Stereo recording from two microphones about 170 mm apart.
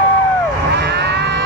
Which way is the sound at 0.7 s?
85° right.